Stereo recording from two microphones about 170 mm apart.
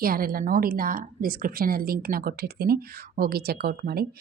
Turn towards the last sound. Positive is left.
turn(degrees=-65)  # may be behind; listen again after turning